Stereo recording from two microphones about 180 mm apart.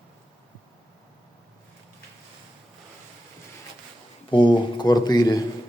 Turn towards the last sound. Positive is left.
turn(degrees=20)  # may be behind; listen again after turning